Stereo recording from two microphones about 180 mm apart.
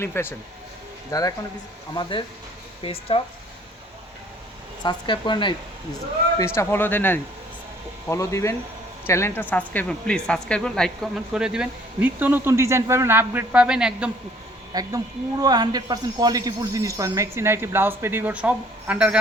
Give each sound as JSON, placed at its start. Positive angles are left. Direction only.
{"t": 0.0, "sound": "speech", "side_deg": 15}
{"t": 4.8, "sound": "speech", "side_deg": 25}
{"t": 6.4, "sound": "speech", "side_deg": 15}
{"t": 14.7, "sound": "speech", "side_deg": -20}